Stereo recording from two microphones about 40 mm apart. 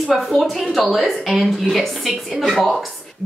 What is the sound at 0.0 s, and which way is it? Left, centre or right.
Speech, centre.